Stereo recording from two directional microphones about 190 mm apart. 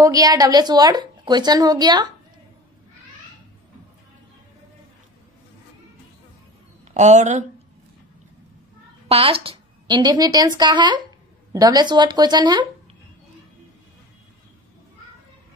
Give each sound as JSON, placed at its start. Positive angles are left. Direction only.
{"t": 0.0, "sound": "a woman's voice", "side_deg": -20}
{"t": 6.9, "sound": "a woman's voice", "side_deg": -40}
{"t": 9.1, "sound": "a woman's voice", "side_deg": -30}